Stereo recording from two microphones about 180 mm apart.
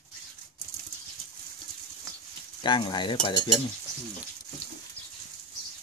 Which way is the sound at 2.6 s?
25° left (ahead or behind).